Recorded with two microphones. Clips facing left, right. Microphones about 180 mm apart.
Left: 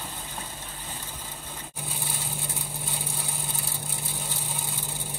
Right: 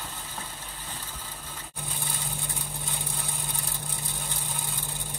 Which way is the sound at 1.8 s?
10° left (ahead or behind).